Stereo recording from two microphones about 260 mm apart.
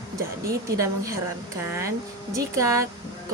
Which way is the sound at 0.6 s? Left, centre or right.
Centre.